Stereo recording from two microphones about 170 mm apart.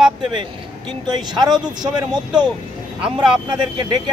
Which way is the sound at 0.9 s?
25° right (ahead or behind).